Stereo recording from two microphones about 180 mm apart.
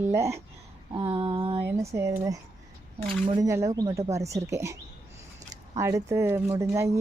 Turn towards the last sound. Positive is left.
turn(degrees=-15)  # may be behind; listen again after turning